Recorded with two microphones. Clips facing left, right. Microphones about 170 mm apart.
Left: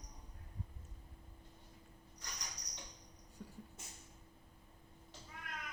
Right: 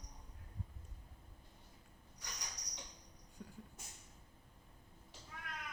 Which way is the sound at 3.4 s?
Centre (ahead or behind).